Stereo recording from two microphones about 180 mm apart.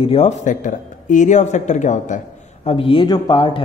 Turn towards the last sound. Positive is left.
turn(degrees=25)  # may be behind; listen again after turning